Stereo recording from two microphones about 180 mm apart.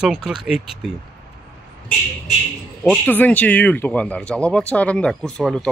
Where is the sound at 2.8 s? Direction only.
10° left (ahead or behind).